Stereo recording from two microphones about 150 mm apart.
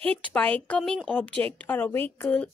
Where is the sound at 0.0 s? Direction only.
10° left (ahead or behind).